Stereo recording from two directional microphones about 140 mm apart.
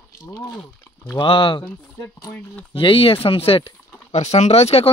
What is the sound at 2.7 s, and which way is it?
Speech, 40° left (ahead or behind).